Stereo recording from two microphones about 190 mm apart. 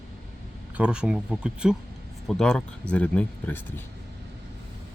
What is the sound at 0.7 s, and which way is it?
Speech, 5° right (ahead or behind).